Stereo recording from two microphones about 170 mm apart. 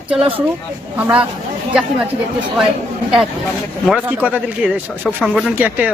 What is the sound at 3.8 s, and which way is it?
Speech, 5° right (ahead or behind).